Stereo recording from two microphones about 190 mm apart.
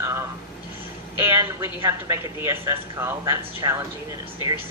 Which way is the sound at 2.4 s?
15° right (ahead or behind).